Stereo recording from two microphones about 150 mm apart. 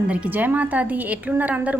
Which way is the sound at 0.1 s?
10° right (ahead or behind).